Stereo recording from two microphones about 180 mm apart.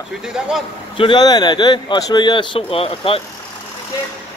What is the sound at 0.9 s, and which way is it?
Speech, 25° left (ahead or behind).